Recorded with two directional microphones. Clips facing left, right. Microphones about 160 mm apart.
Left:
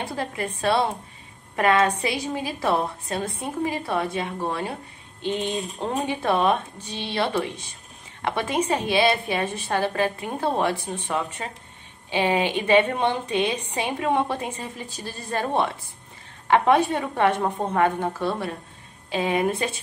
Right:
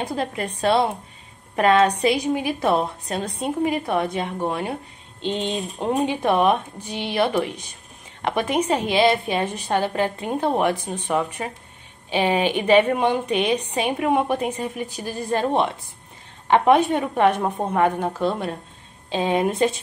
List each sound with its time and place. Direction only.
0.0 s a woman's voice: 20° right (ahead or behind)